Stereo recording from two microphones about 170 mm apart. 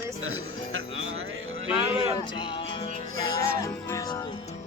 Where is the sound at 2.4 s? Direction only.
30° left (ahead or behind).